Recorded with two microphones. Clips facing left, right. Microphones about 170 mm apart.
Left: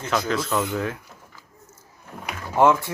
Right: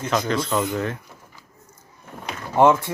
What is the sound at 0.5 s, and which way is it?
Speech, 10° right (ahead or behind).